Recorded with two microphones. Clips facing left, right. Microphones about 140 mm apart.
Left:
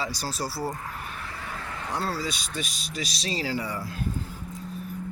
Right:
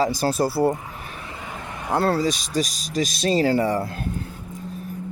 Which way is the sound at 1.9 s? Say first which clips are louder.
Right 10 dB; 60° right (ahead or behind).